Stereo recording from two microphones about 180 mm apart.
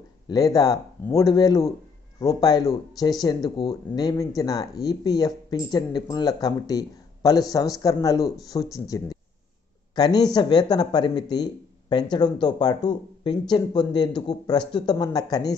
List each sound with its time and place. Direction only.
0.3 s speech: 20° left (ahead or behind)